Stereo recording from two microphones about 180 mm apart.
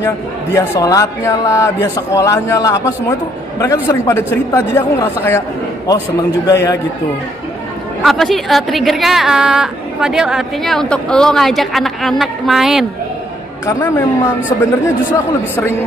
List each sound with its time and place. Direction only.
0.0 s a man's voice: 15° left (ahead or behind)
6.4 s a man's voice: 20° left (ahead or behind)
8.0 s a woman's voice: centre (ahead or behind)
13.7 s a man's voice: 10° left (ahead or behind)